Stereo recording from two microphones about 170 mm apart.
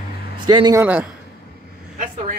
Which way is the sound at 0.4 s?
25° right (ahead or behind).